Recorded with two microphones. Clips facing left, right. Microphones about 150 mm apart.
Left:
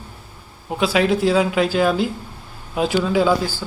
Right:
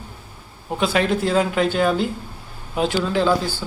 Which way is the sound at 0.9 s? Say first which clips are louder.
Left 3 dB; 5° left (ahead or behind).